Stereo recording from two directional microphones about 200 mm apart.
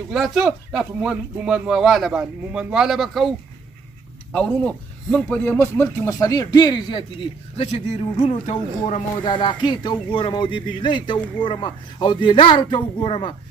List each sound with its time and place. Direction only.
0.1 s speech: centre (ahead or behind); by 7.1 s 25° left (ahead or behind)
8.2 s speech: 30° left (ahead or behind)
9.2 s speech: 20° left (ahead or behind)